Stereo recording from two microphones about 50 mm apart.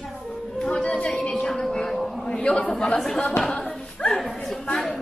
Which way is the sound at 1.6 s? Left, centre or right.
Centre.